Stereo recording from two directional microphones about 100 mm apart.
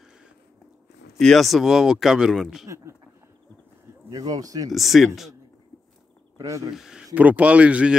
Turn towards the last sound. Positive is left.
turn(degrees=-10)  # may be behind; listen again after turning